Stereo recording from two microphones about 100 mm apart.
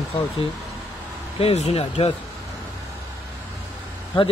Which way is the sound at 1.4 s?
90° left.